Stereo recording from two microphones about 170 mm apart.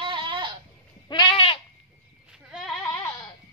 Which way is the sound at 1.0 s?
25° left (ahead or behind).